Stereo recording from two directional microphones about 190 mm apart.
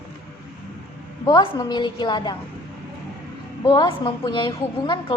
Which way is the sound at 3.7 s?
20° left (ahead or behind).